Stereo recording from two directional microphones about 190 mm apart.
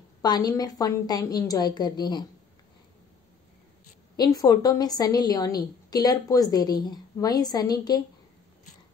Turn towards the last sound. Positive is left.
turn(degrees=20)  # may be behind; listen again after turning